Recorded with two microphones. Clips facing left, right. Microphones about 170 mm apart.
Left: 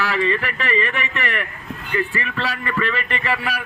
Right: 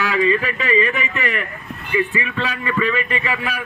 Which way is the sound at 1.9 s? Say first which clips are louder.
Right 3 dB; 10° right (ahead or behind).